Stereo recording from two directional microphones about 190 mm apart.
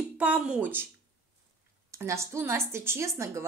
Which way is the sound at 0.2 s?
5° right (ahead or behind).